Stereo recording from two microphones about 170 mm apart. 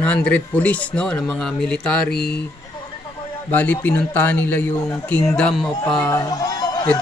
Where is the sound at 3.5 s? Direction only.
10° left (ahead or behind).